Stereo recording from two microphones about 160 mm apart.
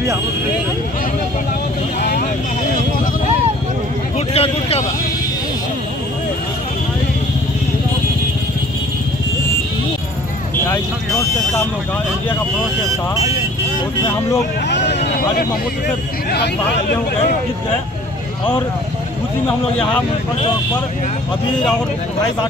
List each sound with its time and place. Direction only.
2.0 s vehicle: 75° left (ahead or behind)
4.3 s speech: 40° left (ahead or behind)
14.7 s speech: 90° left